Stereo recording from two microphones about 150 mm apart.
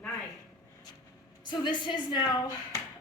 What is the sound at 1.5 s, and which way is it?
Speech, 30° left (ahead or behind).